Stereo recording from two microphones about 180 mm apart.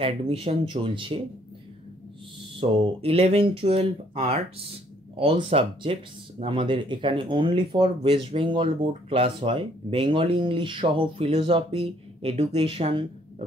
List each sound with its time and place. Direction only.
0.0 s speech: 30° right (ahead or behind)
2.5 s speech: 30° right (ahead or behind)